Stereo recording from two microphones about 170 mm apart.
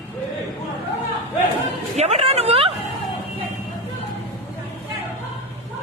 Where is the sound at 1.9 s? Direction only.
40° right (ahead or behind).